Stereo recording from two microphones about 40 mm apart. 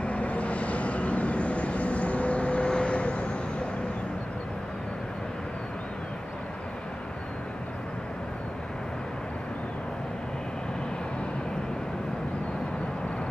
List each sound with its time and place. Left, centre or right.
0.0 s vehicle: left